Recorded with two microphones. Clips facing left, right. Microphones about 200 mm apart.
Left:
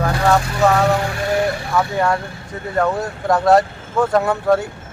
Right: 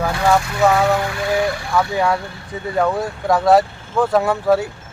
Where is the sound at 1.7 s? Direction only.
Centre (ahead or behind).